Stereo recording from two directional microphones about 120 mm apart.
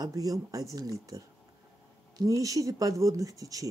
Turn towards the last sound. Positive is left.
turn(degrees=-30)  # may be behind; listen again after turning